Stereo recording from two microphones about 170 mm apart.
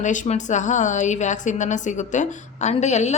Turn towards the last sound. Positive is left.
turn(degrees=40)  # may be behind; listen again after turning